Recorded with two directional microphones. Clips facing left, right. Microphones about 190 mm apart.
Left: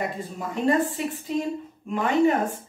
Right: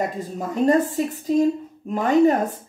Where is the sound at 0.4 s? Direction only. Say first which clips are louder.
Right 4 dB; 40° right (ahead or behind).